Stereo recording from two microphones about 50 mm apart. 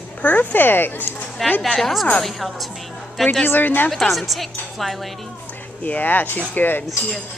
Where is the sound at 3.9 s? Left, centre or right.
Centre.